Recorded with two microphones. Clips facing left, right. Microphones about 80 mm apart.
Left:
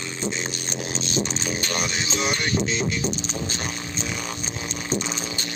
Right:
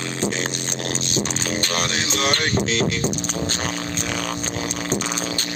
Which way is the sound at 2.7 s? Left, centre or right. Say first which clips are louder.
Right 4 dB; right.